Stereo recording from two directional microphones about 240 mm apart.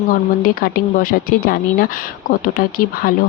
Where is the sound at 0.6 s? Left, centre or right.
Left.